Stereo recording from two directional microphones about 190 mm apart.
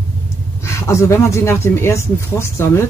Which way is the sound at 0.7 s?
15° left (ahead or behind).